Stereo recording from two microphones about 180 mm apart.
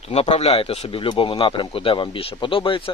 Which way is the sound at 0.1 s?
35° left (ahead or behind).